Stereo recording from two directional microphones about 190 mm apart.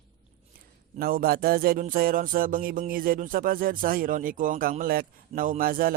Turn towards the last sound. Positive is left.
turn(degrees=-50)  # may be behind; listen again after turning